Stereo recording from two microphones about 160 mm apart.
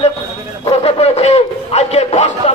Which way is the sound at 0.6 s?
40° left (ahead or behind).